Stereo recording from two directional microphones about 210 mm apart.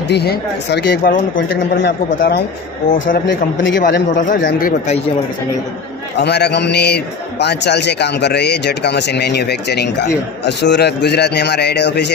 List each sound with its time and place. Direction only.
0.1 s a man's voice: 50° left (ahead or behind)
1.8 s a man's voice: 50° left (ahead or behind)
3.8 s a man's voice: 40° left (ahead or behind)
6.1 s a man's voice: 50° left (ahead or behind)